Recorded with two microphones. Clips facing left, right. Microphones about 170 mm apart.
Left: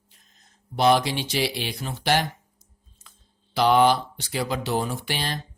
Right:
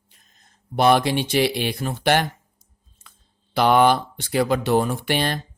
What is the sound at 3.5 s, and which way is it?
Speech, 55° right (ahead or behind).